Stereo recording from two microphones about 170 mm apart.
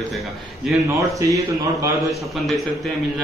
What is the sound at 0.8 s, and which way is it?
A man's voice, 20° right (ahead or behind).